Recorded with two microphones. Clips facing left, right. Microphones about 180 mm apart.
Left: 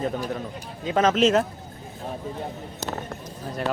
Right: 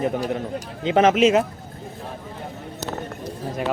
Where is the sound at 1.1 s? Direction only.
5° right (ahead or behind).